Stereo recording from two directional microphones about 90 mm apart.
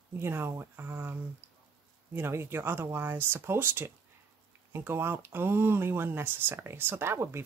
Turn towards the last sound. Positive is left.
turn(degrees=-30)  # may be behind; listen again after turning